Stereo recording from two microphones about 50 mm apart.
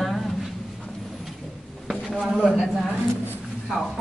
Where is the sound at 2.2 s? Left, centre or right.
Centre.